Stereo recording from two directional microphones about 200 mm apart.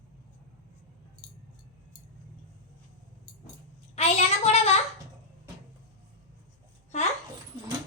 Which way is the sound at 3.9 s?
30° left (ahead or behind).